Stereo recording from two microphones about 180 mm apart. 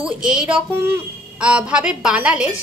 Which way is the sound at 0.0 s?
5° right (ahead or behind).